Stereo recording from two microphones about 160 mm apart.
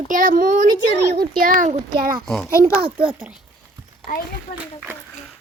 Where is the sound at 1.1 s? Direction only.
70° right (ahead or behind).